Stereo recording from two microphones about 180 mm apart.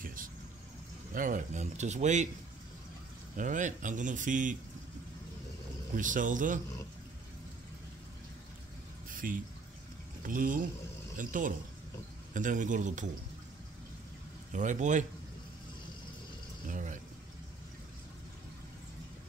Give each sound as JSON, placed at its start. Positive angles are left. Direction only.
{"t": 0.0, "sound": "vehicle", "side_deg": -50}
{"t": 1.1, "sound": "speech", "side_deg": -45}
{"t": 3.3, "sound": "speech", "side_deg": -45}
{"t": 5.9, "sound": "speech", "side_deg": -45}
{"t": 9.1, "sound": "a sound", "side_deg": -50}
{"t": 10.2, "sound": "speech", "side_deg": -50}
{"t": 14.5, "sound": "speech", "side_deg": -45}
{"t": 16.6, "sound": "a sound", "side_deg": -45}